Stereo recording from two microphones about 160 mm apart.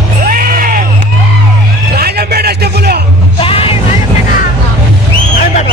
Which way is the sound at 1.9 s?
75° right (ahead or behind).